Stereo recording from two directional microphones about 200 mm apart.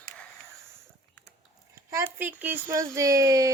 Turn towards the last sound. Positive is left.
turn(degrees=-15)  # may be behind; listen again after turning